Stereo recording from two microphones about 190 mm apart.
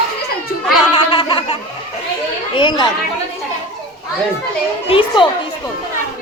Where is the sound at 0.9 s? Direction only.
30° left (ahead or behind).